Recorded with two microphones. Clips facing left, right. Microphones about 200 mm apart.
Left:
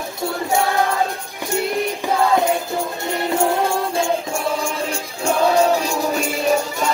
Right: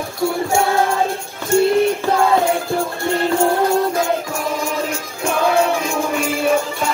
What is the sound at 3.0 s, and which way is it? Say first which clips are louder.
Music: right 3 dB; 15° left (ahead or behind).